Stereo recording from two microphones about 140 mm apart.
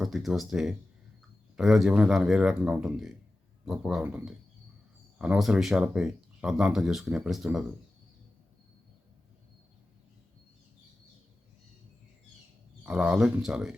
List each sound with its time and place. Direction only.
0.0 s speech: centre (ahead or behind)
12.8 s speech: 5° right (ahead or behind)